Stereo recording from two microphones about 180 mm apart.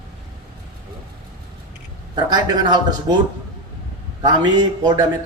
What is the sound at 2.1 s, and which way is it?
Speech, 25° right (ahead or behind).